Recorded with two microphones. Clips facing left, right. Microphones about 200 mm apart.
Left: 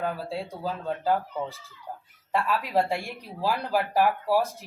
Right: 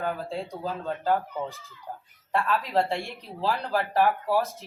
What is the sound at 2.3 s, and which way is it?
Speech, 10° left (ahead or behind).